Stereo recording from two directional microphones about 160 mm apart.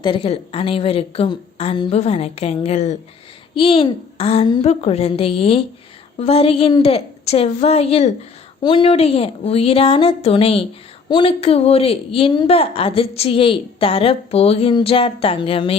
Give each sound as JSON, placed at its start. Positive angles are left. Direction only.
{"t": 0.0, "sound": "a woman's voice", "side_deg": 35}
{"t": 3.5, "sound": "a woman's voice", "side_deg": 35}